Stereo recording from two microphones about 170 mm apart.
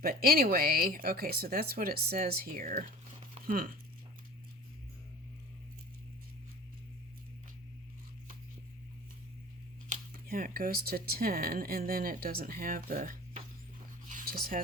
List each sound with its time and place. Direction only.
0.0 s speech: 60° right (ahead or behind)
9.9 s speech: 55° right (ahead or behind)
14.1 s a sound: 55° right (ahead or behind)